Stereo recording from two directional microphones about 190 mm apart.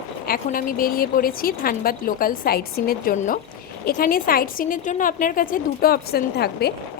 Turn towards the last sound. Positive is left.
turn(degrees=55)  # may be behind; listen again after turning